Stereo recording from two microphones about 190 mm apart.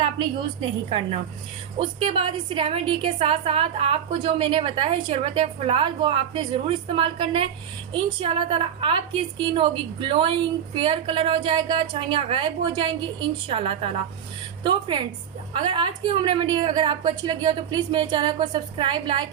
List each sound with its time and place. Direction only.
0.9 s a woman's voice: 30° right (ahead or behind)